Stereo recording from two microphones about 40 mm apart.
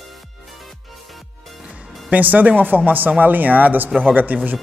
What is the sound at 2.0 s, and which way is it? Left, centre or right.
Speech, right.